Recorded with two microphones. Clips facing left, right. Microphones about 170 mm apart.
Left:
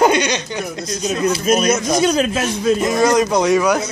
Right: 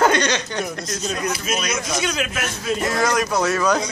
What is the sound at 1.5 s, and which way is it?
Speech, 40° left (ahead or behind).